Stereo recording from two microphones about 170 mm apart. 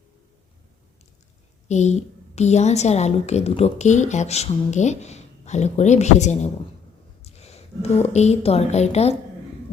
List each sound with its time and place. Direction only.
1.6 s a woman's voice: 40° left (ahead or behind)